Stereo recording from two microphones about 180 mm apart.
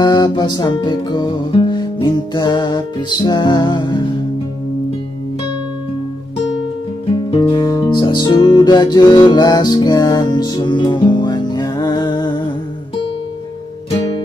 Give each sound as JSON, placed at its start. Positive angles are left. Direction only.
{"t": 0.0, "sound": "music", "side_deg": 25}
{"t": 7.2, "sound": "music", "side_deg": 25}